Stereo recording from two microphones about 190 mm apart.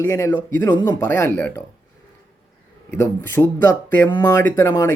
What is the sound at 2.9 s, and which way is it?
Speech, 10° left (ahead or behind).